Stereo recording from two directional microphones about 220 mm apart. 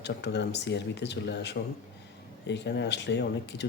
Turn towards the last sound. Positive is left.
turn(degrees=50)  # may be behind; listen again after turning